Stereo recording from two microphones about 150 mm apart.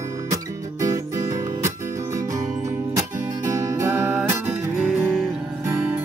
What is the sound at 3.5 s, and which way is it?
Music, 20° right (ahead or behind).